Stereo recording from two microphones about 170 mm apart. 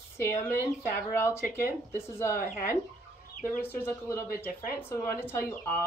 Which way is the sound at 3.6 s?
15° left (ahead or behind).